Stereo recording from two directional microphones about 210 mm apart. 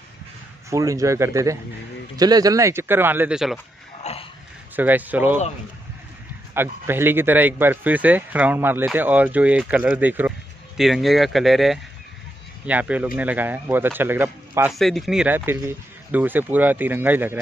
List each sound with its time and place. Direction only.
0.7 s speech: 15° right (ahead or behind)
4.0 s a sound: 30° left (ahead or behind)
4.7 s speech: 10° right (ahead or behind)
6.5 s speech: 10° right (ahead or behind)
14.7 s speech: centre (ahead or behind)